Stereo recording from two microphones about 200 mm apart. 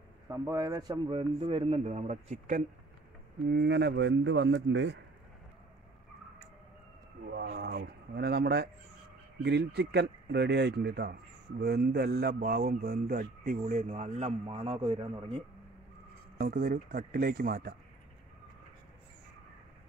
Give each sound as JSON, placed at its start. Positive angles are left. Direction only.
{"t": 0.3, "sound": "a man's voice", "side_deg": -15}
{"t": 3.4, "sound": "speech", "side_deg": -55}
{"t": 7.2, "sound": "a man's voice", "side_deg": -55}
{"t": 16.3, "sound": "speech", "side_deg": -45}